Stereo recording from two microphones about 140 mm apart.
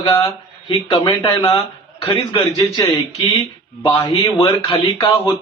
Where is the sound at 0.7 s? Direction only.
35° left (ahead or behind).